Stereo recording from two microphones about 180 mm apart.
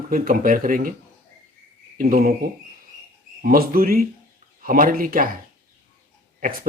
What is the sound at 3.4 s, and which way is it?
Speech, 55° right (ahead or behind).